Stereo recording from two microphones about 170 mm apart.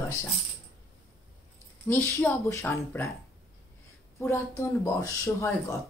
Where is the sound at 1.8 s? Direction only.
10° left (ahead or behind).